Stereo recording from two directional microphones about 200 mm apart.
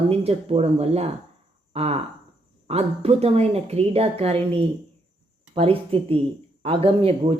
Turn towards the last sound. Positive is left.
turn(degrees=-30)  # may be behind; listen again after turning